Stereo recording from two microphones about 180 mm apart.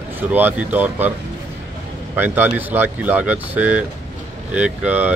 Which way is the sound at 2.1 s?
10° right (ahead or behind).